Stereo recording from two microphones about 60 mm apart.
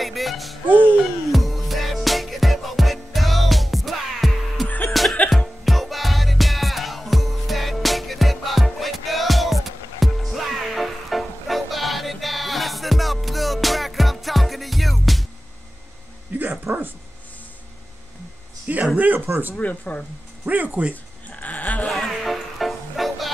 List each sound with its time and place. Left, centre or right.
0.0 s music: centre
16.3 s a sound: right
16.7 s dog: right
18.9 s a sound: right
19.2 s a sound: right
19.6 s speech: left
20.4 s speech: right
20.9 s bleat: left
21.9 s music: centre